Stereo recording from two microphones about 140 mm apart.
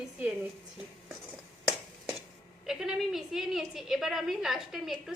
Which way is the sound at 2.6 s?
5° right (ahead or behind).